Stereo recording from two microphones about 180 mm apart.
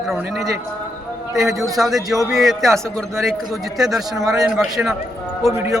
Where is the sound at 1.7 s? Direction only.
Centre (ahead or behind).